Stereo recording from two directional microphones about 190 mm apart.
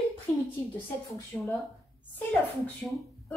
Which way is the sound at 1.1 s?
15° left (ahead or behind).